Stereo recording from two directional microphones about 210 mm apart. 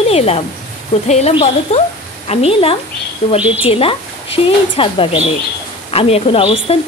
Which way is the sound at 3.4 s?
5° right (ahead or behind).